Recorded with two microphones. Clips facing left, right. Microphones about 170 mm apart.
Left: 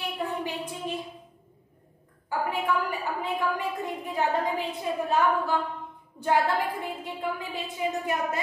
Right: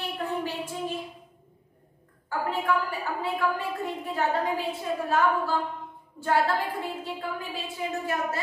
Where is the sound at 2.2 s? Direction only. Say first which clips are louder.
Even; 15° left (ahead or behind).